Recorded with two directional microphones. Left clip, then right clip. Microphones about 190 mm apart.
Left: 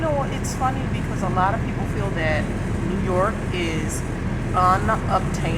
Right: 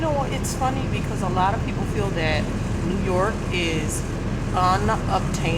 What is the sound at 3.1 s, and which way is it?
Speech, 20° right (ahead or behind).